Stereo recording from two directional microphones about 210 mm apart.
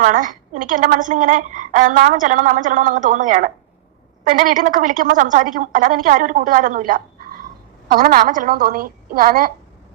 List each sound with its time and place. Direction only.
0.0 s a woman's voice: 35° right (ahead or behind)